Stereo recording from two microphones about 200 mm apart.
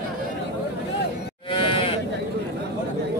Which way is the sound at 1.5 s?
25° left (ahead or behind).